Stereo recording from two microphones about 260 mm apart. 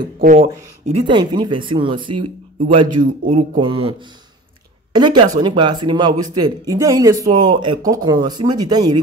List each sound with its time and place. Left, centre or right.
0.2 s speech: right
4.9 s speech: centre